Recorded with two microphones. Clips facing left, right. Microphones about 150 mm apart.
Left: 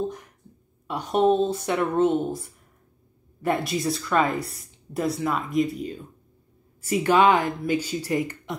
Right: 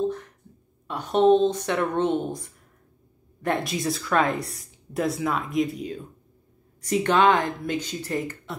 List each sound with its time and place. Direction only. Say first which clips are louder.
0.8 s speech: right 2 dB; 10° left (ahead or behind)
3.4 s speech: left 1 dB; centre (ahead or behind)